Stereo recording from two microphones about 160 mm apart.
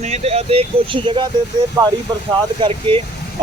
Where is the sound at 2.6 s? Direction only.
35° right (ahead or behind).